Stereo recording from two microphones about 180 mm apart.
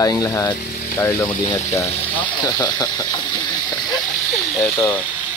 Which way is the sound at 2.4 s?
25° left (ahead or behind).